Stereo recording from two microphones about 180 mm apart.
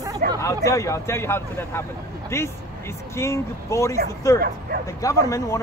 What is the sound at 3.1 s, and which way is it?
Speech, 15° left (ahead or behind).